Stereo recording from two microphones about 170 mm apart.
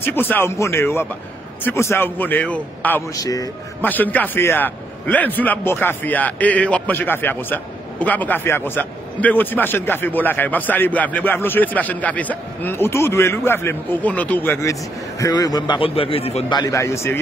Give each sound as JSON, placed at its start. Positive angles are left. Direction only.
{"t": 0.0, "sound": "a man's voice", "side_deg": 10}
{"t": 3.2, "sound": "a man's voice", "side_deg": 20}
{"t": 3.8, "sound": "a man's voice", "side_deg": 10}